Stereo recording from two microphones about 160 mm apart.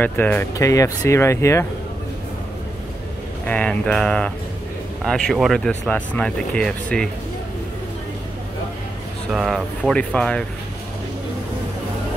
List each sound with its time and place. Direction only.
0.0 s speech: 10° left (ahead or behind)
3.4 s speech: 5° left (ahead or behind)
9.3 s speech: 5° right (ahead or behind)